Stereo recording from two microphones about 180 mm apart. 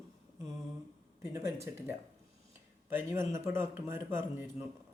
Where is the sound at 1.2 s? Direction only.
15° right (ahead or behind).